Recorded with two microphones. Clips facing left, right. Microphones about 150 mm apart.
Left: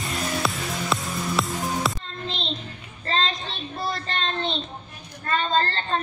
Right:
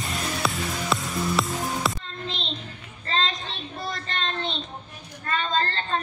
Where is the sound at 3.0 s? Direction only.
35° left (ahead or behind).